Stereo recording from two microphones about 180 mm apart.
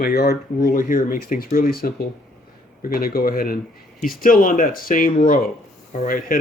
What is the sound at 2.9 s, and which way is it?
Speech, 55° left (ahead or behind).